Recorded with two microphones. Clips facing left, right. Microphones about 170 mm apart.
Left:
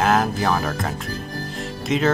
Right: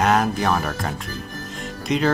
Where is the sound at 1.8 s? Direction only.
Centre (ahead or behind).